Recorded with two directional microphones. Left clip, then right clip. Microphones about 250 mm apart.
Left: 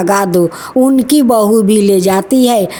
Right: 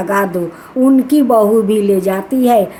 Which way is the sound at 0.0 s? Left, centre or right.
Left.